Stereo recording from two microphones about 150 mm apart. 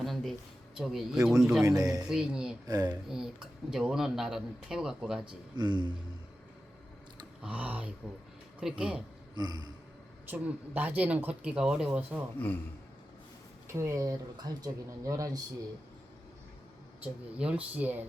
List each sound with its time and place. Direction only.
0.0 s a sound: centre (ahead or behind)
0.8 s speech: centre (ahead or behind)
1.6 s speech: 25° right (ahead or behind)
2.0 s speech: 5° right (ahead or behind)
2.6 s speech: 25° right (ahead or behind)
3.1 s speech: 5° right (ahead or behind)
5.2 s speech: 30° right (ahead or behind)
7.4 s speech: 10° right (ahead or behind)
9.3 s a sound: 30° right (ahead or behind)
10.2 s speech: 10° right (ahead or behind)
13.7 s speech: 20° right (ahead or behind)
17.0 s speech: 10° right (ahead or behind)